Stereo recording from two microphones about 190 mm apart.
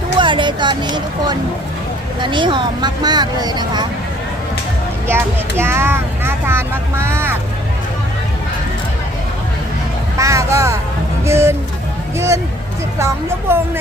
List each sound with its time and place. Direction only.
0.2 s speech: 25° right (ahead or behind)
5.0 s speech: 10° right (ahead or behind)
10.2 s speech: 15° right (ahead or behind)
13.0 s speech: 15° right (ahead or behind)